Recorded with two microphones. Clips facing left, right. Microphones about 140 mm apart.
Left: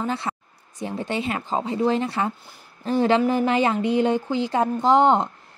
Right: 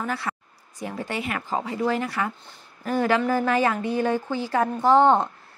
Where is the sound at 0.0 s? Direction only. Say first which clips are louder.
Left 2 dB; 25° left (ahead or behind).